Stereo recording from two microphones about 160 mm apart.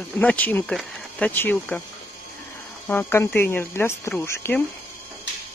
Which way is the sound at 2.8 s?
15° left (ahead or behind).